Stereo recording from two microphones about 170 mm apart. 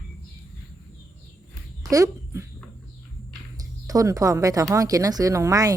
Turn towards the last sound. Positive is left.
turn(degrees=-20)  # may be behind; listen again after turning